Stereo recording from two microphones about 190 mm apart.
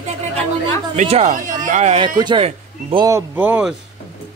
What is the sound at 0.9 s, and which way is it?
Speech, 35° right (ahead or behind).